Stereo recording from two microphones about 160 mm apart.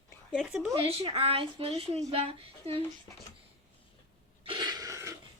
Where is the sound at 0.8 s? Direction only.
35° right (ahead or behind).